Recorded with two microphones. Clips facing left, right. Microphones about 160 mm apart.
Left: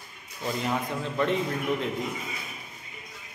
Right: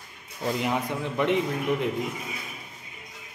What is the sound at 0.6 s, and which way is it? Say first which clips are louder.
A man's voice: even; 15° right (ahead or behind).